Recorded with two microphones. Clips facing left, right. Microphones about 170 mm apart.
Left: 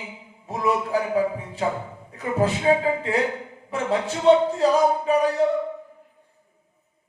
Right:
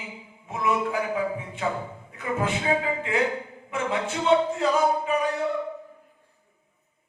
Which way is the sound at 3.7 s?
35° left (ahead or behind).